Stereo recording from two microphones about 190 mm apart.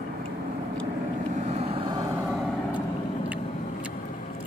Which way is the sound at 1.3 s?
35° right (ahead or behind).